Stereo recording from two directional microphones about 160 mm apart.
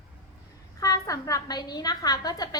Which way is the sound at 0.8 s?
20° left (ahead or behind).